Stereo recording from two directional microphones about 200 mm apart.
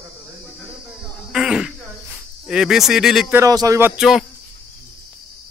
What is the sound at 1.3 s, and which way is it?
Throat clearing, 5° right (ahead or behind).